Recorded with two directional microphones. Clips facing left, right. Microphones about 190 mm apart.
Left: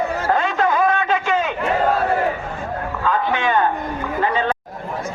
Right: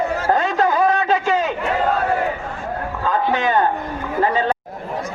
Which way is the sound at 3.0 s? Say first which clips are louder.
Right 1 dB; 40° right (ahead or behind).